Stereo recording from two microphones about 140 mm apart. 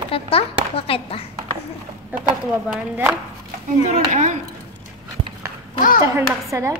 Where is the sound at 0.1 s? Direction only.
45° left (ahead or behind).